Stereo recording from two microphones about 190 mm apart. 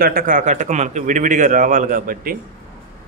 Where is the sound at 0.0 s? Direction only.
50° right (ahead or behind).